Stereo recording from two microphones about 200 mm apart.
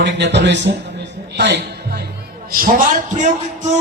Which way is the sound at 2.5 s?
45° right (ahead or behind).